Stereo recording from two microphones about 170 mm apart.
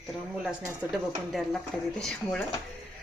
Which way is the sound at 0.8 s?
10° right (ahead or behind).